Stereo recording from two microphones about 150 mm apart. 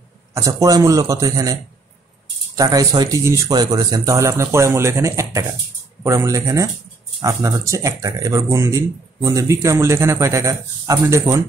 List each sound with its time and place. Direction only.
0.3 s speech: 20° right (ahead or behind)